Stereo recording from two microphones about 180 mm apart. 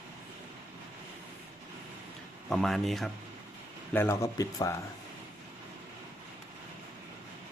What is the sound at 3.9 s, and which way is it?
Speech, 15° left (ahead or behind).